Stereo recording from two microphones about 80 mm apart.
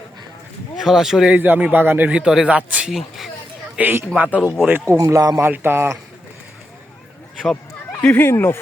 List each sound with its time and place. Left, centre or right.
0.8 s speech: centre
1.4 s a man's voice: centre
2.1 s a man's voice: centre
4.4 s speech: centre
4.9 s a man's voice: right
5.4 s a man's voice: right
8.0 s speech: left